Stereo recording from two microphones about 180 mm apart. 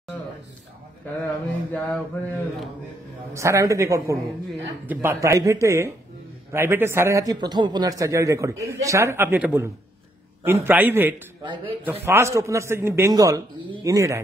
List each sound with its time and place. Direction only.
1.7 s mantra: 10° left (ahead or behind)
3.3 s a man's voice: 15° right (ahead or behind)